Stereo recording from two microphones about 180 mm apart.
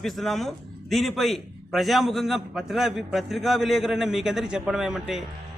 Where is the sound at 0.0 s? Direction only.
Centre (ahead or behind).